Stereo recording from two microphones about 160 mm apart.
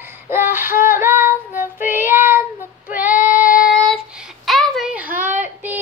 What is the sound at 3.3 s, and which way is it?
Child singing, 55° left (ahead or behind).